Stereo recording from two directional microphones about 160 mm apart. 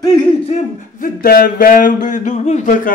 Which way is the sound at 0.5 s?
45° left (ahead or behind).